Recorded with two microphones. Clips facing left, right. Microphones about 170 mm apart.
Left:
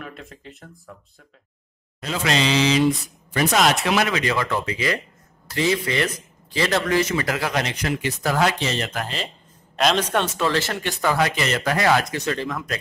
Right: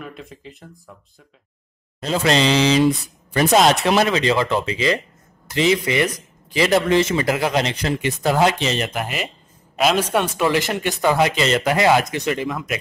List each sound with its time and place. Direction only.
0.0 s speech: centre (ahead or behind)
2.0 s speech: 35° right (ahead or behind); by 12.7 s 15° right (ahead or behind)